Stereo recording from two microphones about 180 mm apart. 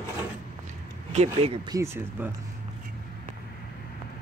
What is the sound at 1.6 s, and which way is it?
Speech, 15° right (ahead or behind).